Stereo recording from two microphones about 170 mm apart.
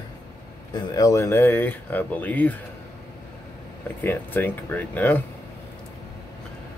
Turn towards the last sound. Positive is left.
turn(degrees=10)  # may be behind; listen again after turning